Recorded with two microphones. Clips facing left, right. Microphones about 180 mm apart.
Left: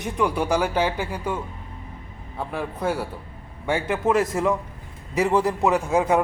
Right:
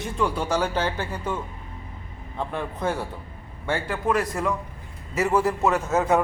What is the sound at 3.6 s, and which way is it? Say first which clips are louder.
A man's voice: left 3 dB; 20° left (ahead or behind).